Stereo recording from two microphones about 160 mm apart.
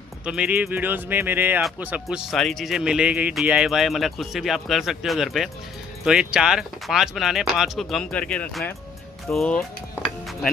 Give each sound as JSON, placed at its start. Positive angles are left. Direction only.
{"t": 0.2, "sound": "speech", "side_deg": -5}